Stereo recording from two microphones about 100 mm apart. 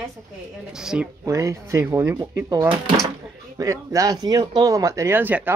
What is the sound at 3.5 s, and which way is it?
Speech, 35° right (ahead or behind).